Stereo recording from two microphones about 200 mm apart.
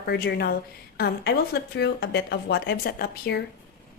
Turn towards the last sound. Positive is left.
turn(degrees=50)  # may be behind; listen again after turning